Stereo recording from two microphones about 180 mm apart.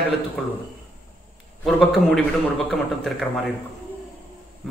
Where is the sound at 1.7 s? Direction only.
Centre (ahead or behind).